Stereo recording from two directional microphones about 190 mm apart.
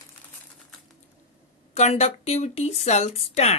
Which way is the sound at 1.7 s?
35° left (ahead or behind).